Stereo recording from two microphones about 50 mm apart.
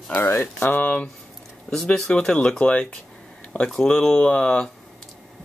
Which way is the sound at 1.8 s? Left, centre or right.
Centre.